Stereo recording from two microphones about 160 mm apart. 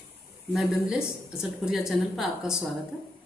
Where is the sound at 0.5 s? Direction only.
5° right (ahead or behind).